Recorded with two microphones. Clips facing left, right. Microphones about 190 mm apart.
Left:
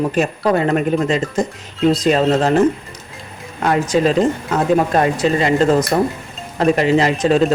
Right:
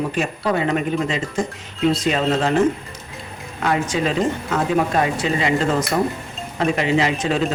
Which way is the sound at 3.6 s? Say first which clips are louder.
Left 5 dB; 40° left (ahead or behind).